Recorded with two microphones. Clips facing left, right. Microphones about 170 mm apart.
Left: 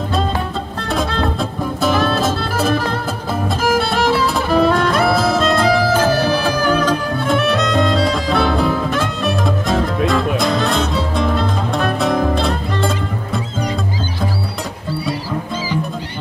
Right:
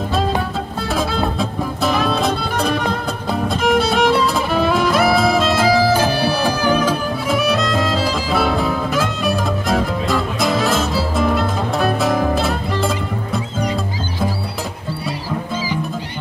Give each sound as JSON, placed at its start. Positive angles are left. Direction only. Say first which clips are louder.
{"t": 0.9, "sound": "music", "louder": "left 1 dB", "side_deg": -5}